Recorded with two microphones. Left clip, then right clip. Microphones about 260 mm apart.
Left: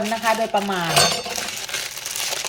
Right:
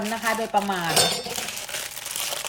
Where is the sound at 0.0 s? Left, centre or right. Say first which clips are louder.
Left 5 dB; centre.